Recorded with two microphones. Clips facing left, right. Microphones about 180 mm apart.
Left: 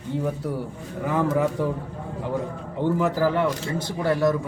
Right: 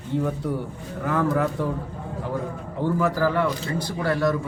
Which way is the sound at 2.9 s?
20° left (ahead or behind).